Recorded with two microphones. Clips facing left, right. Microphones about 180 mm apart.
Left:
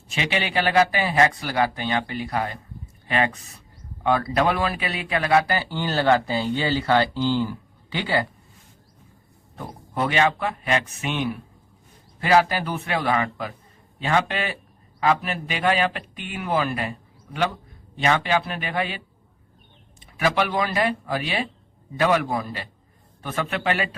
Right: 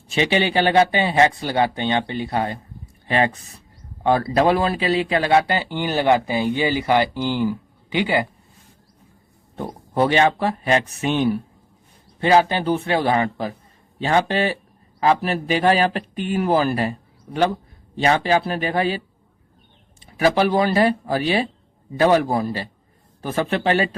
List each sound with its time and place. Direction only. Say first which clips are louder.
0.1 s speech: right 6 dB; 30° right (ahead or behind)
9.6 s speech: right 7 dB; 30° right (ahead or behind)
17.9 s speech: right 4 dB; 35° right (ahead or behind)
20.1 s speech: right 5 dB; 35° right (ahead or behind)